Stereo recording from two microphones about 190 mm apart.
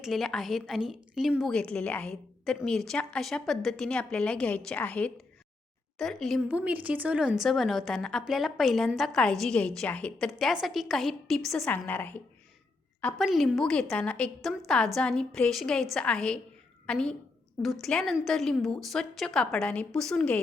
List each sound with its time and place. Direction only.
0.0 s a woman's voice: centre (ahead or behind)